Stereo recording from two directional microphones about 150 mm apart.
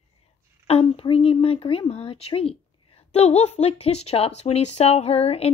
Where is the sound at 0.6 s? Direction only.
40° left (ahead or behind).